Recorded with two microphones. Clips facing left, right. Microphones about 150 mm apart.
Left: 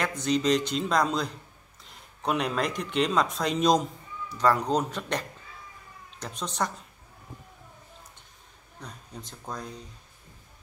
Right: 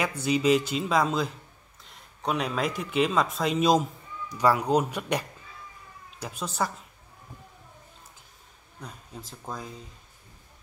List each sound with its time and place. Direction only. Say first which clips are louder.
0.0 s speech: right 1 dB; 10° right (ahead or behind)
8.8 s speech: right 1 dB; 5° right (ahead or behind)